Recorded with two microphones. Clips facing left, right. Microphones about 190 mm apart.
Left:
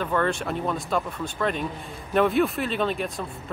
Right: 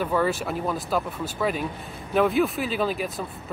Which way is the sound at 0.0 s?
5° right (ahead or behind).